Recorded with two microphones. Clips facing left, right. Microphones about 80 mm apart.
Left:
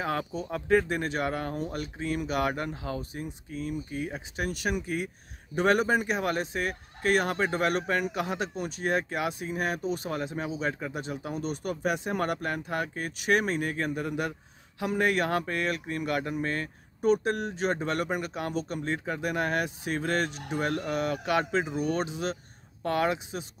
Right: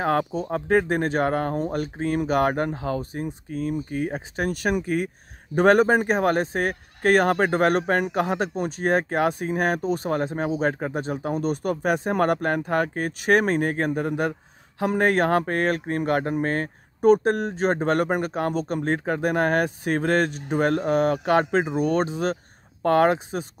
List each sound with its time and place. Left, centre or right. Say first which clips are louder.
0.0 s speech: right 8 dB; right